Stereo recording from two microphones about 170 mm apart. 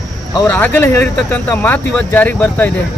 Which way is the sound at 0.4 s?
10° left (ahead or behind).